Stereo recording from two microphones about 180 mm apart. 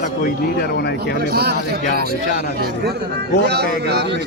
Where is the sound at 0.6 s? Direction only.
65° left (ahead or behind).